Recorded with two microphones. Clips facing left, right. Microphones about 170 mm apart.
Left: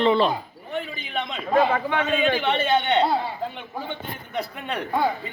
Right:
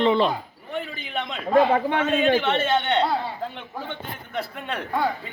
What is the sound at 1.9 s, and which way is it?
Speech, 50° right (ahead or behind).